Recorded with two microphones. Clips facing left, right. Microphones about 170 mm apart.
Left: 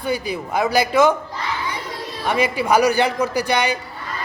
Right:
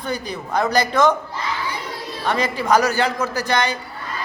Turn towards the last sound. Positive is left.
turn(degrees=10)  # may be behind; listen again after turning